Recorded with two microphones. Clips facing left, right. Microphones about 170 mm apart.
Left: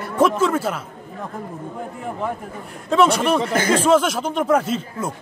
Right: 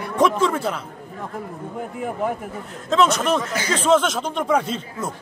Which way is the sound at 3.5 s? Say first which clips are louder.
Left 6 dB; 50° left (ahead or behind).